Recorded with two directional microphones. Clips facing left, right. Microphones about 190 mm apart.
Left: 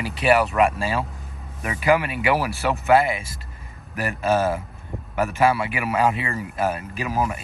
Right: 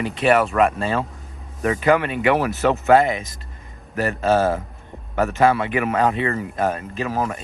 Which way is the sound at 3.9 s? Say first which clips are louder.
Right 3 dB; 40° right (ahead or behind).